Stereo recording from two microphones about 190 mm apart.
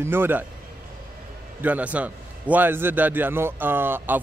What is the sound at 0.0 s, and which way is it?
Speech, 10° right (ahead or behind).